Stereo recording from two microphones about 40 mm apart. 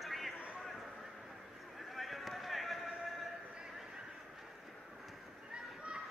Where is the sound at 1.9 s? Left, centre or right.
Centre.